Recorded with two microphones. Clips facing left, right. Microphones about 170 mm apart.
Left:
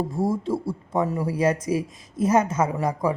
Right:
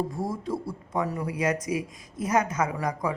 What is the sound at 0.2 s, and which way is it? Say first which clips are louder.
Speech: left 6 dB; 25° left (ahead or behind).